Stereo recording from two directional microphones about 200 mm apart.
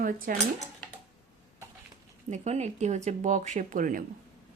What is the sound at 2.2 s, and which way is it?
Speech, 35° right (ahead or behind).